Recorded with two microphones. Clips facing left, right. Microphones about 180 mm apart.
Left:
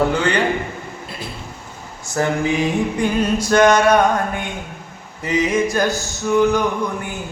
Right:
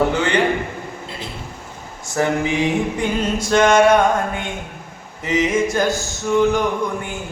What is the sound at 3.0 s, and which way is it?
Music, 25° right (ahead or behind).